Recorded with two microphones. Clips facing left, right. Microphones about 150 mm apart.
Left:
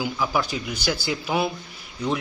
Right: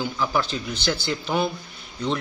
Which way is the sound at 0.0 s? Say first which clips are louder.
Even; 10° left (ahead or behind).